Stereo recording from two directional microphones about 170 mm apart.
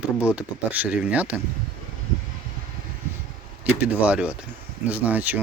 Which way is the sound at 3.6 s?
10° right (ahead or behind).